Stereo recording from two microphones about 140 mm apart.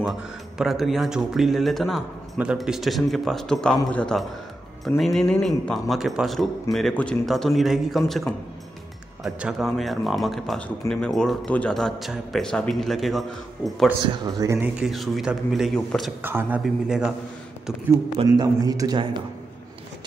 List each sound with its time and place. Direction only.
0.6 s speech: centre (ahead or behind)
14.0 s a man's voice: 25° right (ahead or behind)
14.8 s speech: centre (ahead or behind)
16.2 s speech: 15° right (ahead or behind)
18.4 s a man's voice: 25° right (ahead or behind)